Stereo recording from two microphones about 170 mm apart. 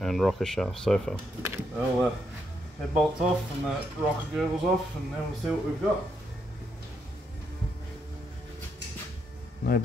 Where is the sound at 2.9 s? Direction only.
5° right (ahead or behind).